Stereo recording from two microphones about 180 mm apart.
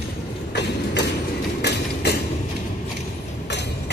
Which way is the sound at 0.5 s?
70° left (ahead or behind).